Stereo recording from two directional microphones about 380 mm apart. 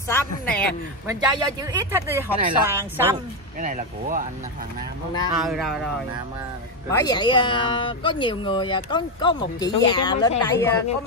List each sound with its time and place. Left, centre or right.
0.1 s a woman's voice: centre
1.0 s speech: centre
3.6 s speech: right
5.4 s a woman's voice: centre
6.9 s speech: centre